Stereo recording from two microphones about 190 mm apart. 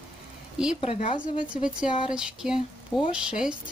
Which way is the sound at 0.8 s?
30° left (ahead or behind).